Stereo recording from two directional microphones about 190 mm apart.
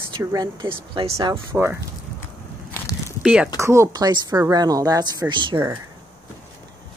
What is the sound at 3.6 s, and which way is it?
Speech, 15° right (ahead or behind).